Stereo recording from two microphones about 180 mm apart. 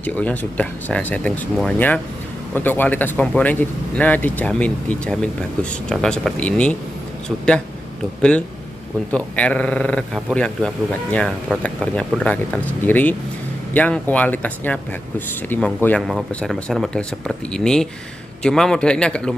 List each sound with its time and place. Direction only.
0.0 s a man's voice: 10° left (ahead or behind)
9.1 s a man's voice: 5° left (ahead or behind)